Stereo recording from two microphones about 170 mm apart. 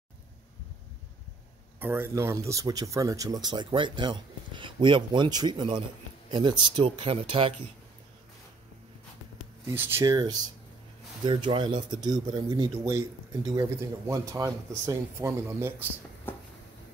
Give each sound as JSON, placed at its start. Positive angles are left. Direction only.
{"t": 1.8, "sound": "speech", "side_deg": -15}
{"t": 9.7, "sound": "speech", "side_deg": -15}
{"t": 10.1, "sound": "speech", "side_deg": -25}
{"t": 16.3, "sound": "a sound", "side_deg": 10}